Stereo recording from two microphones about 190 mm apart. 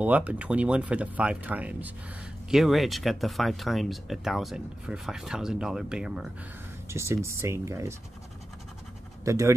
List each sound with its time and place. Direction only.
0.0 s speech: 10° right (ahead or behind)
6.9 s speech: 15° right (ahead or behind)
9.2 s speech: 15° right (ahead or behind)